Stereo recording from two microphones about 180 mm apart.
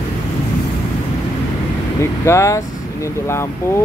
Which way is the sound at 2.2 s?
15° left (ahead or behind).